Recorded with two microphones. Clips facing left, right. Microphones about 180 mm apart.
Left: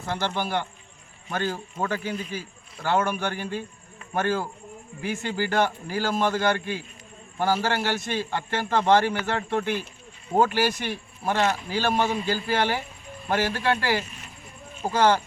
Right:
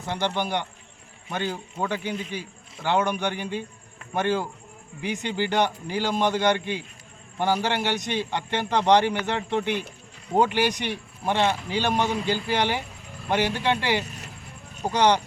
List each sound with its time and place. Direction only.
0.3 s a man's voice: 15° right (ahead or behind)